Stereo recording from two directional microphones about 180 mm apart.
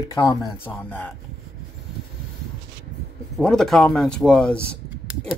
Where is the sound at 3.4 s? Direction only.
5° left (ahead or behind).